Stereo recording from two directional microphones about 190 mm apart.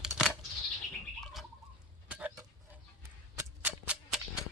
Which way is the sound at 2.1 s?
5° right (ahead or behind).